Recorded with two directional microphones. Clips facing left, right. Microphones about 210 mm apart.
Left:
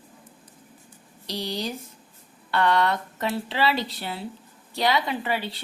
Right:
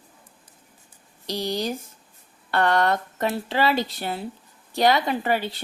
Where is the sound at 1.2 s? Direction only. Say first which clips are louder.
Right 4 dB; 45° right (ahead or behind).